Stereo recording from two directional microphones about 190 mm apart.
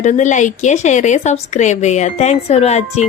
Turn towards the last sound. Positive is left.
turn(degrees=35)  # may be behind; listen again after turning